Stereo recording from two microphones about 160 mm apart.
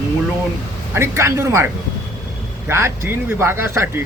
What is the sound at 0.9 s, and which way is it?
Speech, 15° right (ahead or behind).